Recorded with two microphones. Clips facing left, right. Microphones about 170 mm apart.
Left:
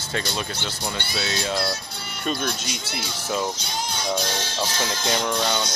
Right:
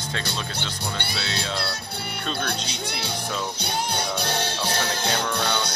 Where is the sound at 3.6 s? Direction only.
60° right (ahead or behind).